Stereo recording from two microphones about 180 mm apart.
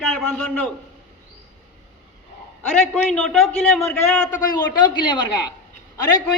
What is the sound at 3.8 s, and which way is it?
A man's voice, 15° left (ahead or behind).